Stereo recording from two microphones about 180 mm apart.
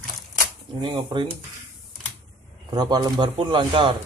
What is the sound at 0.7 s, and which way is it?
Speech, 25° right (ahead or behind).